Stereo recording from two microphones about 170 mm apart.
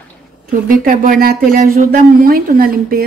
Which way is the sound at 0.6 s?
55° right (ahead or behind).